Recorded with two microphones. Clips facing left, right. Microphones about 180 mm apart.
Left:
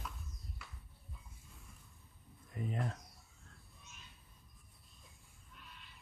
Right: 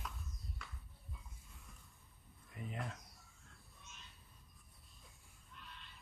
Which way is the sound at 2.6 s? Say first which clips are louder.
Left 6 dB; 40° left (ahead or behind).